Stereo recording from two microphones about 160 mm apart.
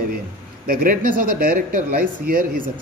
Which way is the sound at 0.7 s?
65° right (ahead or behind).